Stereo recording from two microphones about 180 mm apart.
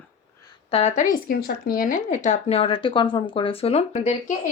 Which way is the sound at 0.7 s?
40° left (ahead or behind).